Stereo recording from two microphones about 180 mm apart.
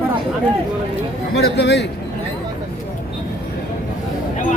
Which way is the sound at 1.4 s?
65° left (ahead or behind).